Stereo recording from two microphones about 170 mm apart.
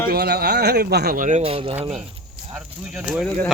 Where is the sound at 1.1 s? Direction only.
50° right (ahead or behind).